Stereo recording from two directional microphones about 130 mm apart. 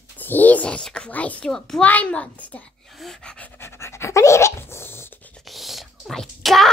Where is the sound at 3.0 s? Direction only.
5° left (ahead or behind).